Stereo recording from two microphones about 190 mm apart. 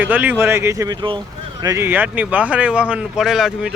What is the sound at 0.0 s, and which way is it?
Speech, 10° right (ahead or behind).